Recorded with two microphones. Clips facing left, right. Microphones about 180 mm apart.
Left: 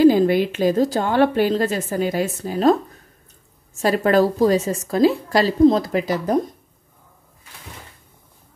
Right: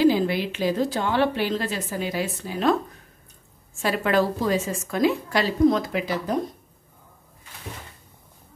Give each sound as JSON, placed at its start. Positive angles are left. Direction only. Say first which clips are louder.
{"t": 0.0, "sound": "a woman's voice", "louder": "left 6 dB", "side_deg": 45}
{"t": 3.7, "sound": "a woman's voice", "louder": "left 5 dB", "side_deg": 40}